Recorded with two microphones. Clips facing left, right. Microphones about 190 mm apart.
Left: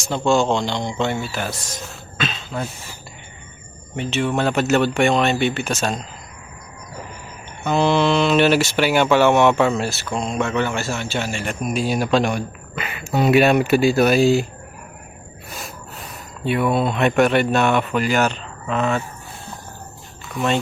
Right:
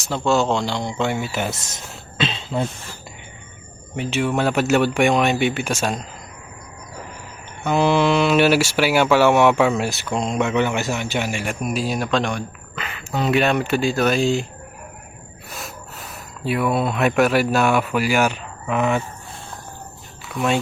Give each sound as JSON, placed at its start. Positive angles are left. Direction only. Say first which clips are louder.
{"t": 0.1, "sound": "speech", "louder": "left 1 dB", "side_deg": -5}
{"t": 2.1, "sound": "cough", "louder": "right 3 dB", "side_deg": -30}
{"t": 3.9, "sound": "speech", "louder": "even", "side_deg": -10}
{"t": 7.6, "sound": "speech", "louder": "even", "side_deg": -10}
{"t": 15.4, "sound": "speech", "louder": "even", "side_deg": 0}
{"t": 20.3, "sound": "speech", "louder": "even", "side_deg": -5}